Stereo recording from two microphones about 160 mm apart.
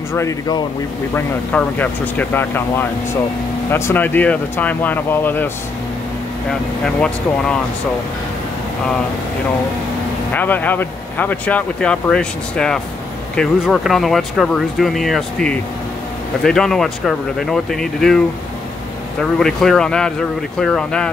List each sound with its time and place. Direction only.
0.1 s speech: 20° left (ahead or behind)
1.1 s speech: 10° left (ahead or behind)
6.8 s speech: 5° left (ahead or behind)
10.3 s speech: 10° left (ahead or behind)
19.2 s speech: centre (ahead or behind)